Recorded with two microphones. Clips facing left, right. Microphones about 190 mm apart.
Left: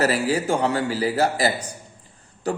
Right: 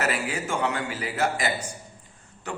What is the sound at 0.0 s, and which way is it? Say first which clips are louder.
A man's voice: left 7 dB; 35° left (ahead or behind).